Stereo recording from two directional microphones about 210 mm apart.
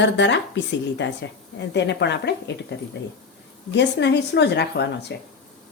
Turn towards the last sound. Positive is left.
turn(degrees=55)  # may be behind; listen again after turning